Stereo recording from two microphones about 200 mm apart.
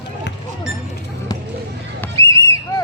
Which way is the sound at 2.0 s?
15° left (ahead or behind).